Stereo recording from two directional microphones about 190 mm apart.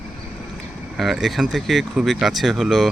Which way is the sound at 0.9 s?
Centre (ahead or behind).